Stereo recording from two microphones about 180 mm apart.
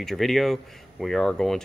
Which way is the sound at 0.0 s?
Centre (ahead or behind).